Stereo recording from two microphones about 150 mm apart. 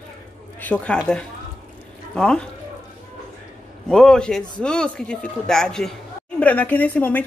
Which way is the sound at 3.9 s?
5° left (ahead or behind).